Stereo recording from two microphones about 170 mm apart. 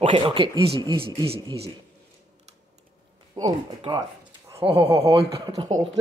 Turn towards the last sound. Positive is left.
turn(degrees=-20)  # may be behind; listen again after turning